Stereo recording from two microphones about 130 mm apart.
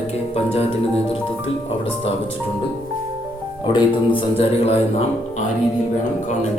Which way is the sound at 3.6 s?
40° left (ahead or behind).